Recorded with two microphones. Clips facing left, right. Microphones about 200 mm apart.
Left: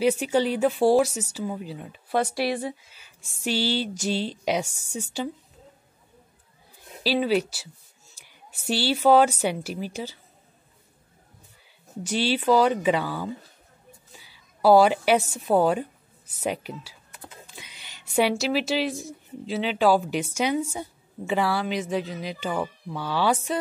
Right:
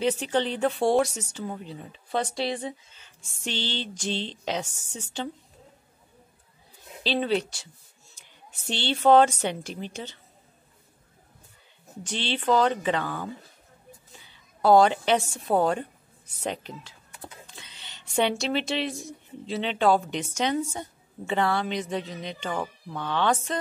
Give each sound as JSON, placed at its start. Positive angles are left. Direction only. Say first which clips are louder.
{"t": 0.0, "sound": "speech", "louder": "left 3 dB", "side_deg": 10}
{"t": 2.3, "sound": "speech", "louder": "left 3 dB", "side_deg": -25}
{"t": 3.0, "sound": "speech", "louder": "left 4 dB", "side_deg": 10}
{"t": 7.0, "sound": "a woman's voice", "louder": "left 3 dB", "side_deg": 5}
{"t": 12.0, "sound": "speech", "louder": "left 6 dB", "side_deg": 10}
{"t": 14.6, "sound": "speech", "louder": "left 2 dB", "side_deg": 5}